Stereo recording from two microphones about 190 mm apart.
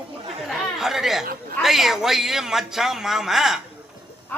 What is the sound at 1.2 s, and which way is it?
Speech, 50° right (ahead or behind).